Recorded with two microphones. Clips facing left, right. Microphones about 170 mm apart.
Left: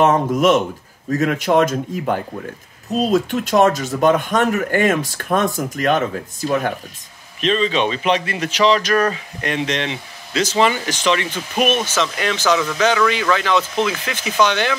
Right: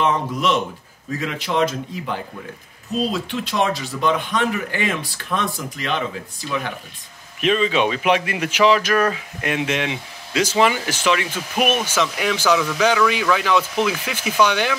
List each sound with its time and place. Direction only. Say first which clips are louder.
0.0 s speech: left 6 dB; 45° left (ahead or behind)
7.3 s speech: even; 10° right (ahead or behind)